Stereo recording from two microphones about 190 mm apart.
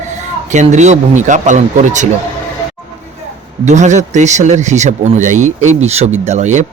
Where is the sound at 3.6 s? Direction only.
40° right (ahead or behind).